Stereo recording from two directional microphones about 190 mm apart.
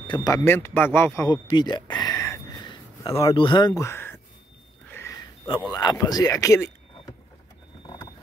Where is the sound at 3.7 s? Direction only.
15° left (ahead or behind).